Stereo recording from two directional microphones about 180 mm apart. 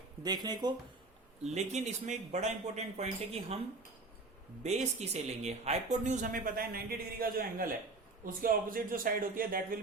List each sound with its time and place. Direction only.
0.2 s speech: 20° right (ahead or behind)
1.5 s speech: 35° right (ahead or behind)
4.6 s speech: 40° right (ahead or behind)